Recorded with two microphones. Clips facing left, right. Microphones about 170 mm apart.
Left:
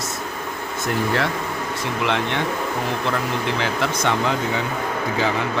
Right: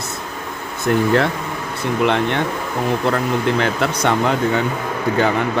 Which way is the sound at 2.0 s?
50° right (ahead or behind).